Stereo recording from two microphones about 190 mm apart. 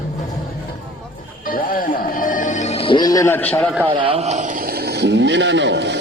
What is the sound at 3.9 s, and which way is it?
Speech, 30° right (ahead or behind).